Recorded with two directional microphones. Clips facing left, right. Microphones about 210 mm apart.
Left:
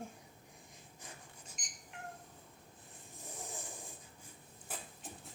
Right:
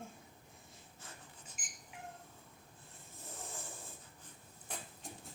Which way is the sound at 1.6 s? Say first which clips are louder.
Even; 5° right (ahead or behind).